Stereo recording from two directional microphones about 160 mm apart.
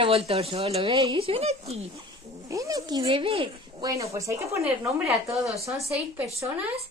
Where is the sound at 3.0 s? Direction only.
35° right (ahead or behind).